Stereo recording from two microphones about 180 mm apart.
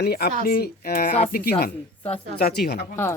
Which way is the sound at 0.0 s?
60° left (ahead or behind).